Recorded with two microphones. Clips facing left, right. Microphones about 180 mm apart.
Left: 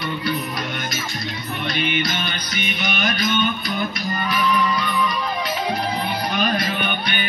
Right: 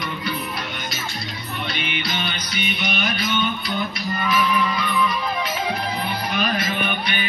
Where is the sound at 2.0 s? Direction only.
45° left (ahead or behind).